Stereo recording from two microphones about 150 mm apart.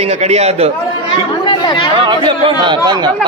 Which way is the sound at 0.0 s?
45° right (ahead or behind).